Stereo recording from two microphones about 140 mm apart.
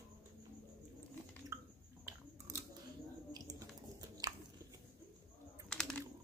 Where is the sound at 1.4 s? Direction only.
20° right (ahead or behind).